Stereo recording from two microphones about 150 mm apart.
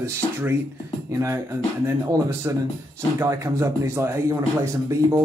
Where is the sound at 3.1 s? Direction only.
20° right (ahead or behind).